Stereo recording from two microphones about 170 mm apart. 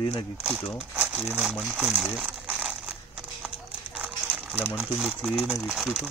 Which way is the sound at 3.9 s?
5° right (ahead or behind).